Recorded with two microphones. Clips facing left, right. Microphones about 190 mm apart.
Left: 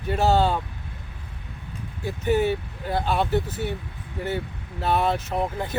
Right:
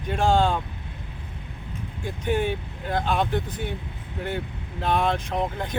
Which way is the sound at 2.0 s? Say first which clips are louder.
Left 3 dB; 5° left (ahead or behind).